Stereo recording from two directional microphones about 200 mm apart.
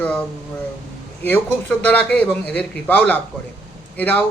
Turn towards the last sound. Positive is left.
turn(degrees=10)  # may be behind; listen again after turning